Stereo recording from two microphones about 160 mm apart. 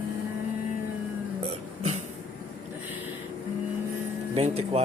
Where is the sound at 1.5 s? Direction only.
45° right (ahead or behind).